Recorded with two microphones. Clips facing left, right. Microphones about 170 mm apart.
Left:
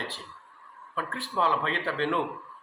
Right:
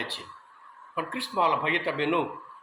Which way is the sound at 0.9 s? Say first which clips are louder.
Right 1 dB; 15° right (ahead or behind).